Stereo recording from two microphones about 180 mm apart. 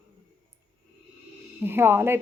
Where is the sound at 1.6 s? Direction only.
10° right (ahead or behind).